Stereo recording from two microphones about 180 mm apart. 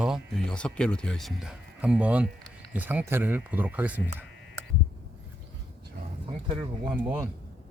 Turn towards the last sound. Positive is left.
turn(degrees=-10)  # may be behind; listen again after turning